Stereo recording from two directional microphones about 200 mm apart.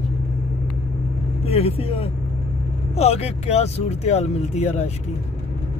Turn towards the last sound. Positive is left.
turn(degrees=30)  # may be behind; listen again after turning